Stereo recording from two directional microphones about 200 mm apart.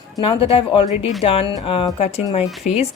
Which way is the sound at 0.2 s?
25° left (ahead or behind).